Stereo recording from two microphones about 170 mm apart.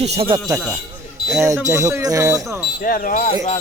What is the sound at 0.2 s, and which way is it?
Speech, 25° right (ahead or behind).